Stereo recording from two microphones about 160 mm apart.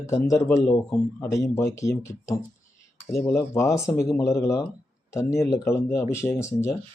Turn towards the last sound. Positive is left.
turn(degrees=20)  # may be behind; listen again after turning